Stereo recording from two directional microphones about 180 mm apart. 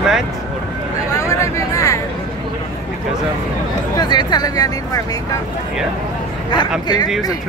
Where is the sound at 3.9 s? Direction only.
25° left (ahead or behind).